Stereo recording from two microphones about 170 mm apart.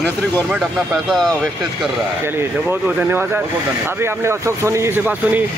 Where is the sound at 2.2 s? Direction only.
15° right (ahead or behind).